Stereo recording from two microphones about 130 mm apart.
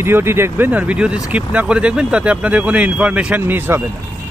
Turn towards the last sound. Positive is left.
turn(degrees=-15)  # may be behind; listen again after turning